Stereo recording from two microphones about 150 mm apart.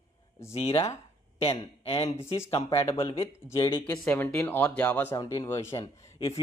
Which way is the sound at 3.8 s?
10° left (ahead or behind).